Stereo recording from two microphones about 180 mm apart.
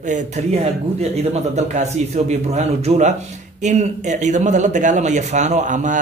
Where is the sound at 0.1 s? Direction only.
35° right (ahead or behind).